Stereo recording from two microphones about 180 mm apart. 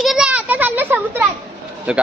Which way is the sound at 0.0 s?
5° right (ahead or behind).